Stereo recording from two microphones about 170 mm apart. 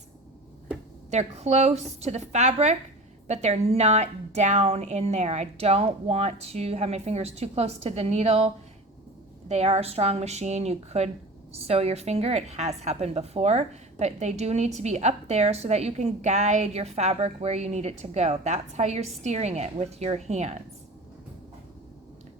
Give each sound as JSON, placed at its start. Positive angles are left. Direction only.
{"t": 1.1, "sound": "a woman's voice", "side_deg": -40}